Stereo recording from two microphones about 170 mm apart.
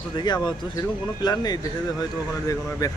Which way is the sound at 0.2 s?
25° left (ahead or behind).